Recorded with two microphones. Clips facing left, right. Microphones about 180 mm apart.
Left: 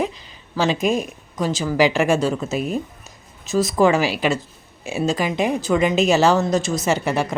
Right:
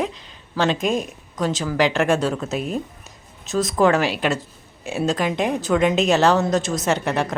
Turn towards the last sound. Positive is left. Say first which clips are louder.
# left 1 dB
turn(degrees=5)  # may be behind; listen again after turning